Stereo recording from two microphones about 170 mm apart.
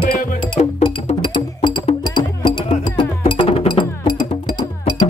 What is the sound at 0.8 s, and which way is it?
Music, 30° left (ahead or behind).